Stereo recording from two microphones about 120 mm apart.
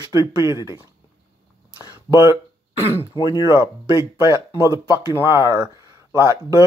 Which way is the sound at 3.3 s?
25° right (ahead or behind).